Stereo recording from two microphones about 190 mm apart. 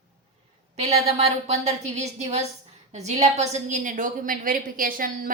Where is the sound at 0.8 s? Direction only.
35° right (ahead or behind).